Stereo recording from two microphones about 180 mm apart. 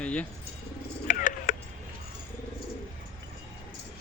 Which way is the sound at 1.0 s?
45° left (ahead or behind).